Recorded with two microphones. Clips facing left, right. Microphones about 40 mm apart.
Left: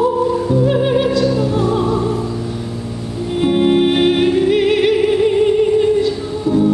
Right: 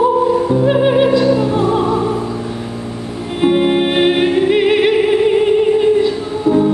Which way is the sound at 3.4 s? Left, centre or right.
Centre.